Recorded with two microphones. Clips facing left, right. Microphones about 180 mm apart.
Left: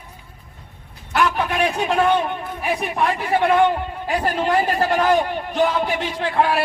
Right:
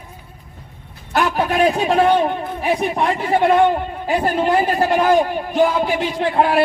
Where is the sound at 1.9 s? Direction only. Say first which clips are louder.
Right 3 dB; 35° right (ahead or behind); by 5.2 s 15° right (ahead or behind).